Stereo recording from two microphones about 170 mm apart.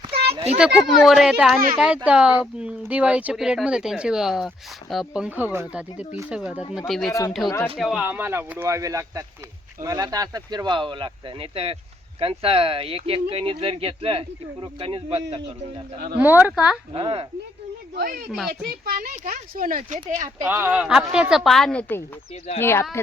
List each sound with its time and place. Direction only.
0.6 s speech: centre (ahead or behind); by 15.2 s 35° right (ahead or behind)
16.1 s speech: 10° right (ahead or behind)
16.9 s speech: 35° right (ahead or behind)
17.9 s speech: 60° right (ahead or behind)
18.3 s speech: centre (ahead or behind)
18.7 s speech: 55° right (ahead or behind)
20.4 s speech: 10° right (ahead or behind); by 22.0 s 10° left (ahead or behind)
22.3 s speech: 40° left (ahead or behind)
22.6 s speech: 15° left (ahead or behind)